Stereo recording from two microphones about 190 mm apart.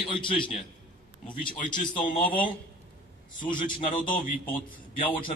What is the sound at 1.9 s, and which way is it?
Speech, 45° left (ahead or behind).